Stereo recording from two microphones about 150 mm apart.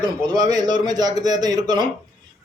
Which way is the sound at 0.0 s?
30° right (ahead or behind).